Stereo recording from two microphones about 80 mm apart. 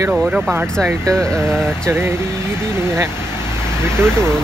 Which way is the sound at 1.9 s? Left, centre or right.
Right.